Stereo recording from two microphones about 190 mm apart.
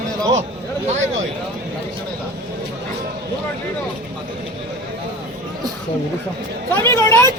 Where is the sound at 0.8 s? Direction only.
35° right (ahead or behind).